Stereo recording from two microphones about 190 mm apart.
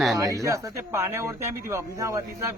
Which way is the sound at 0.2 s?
15° right (ahead or behind).